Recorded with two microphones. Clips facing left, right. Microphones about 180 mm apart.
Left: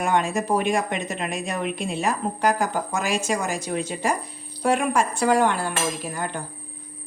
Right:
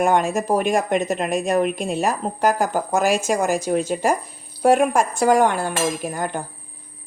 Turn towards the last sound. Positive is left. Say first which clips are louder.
# right 4 dB
turn(degrees=-45)  # may be behind; listen again after turning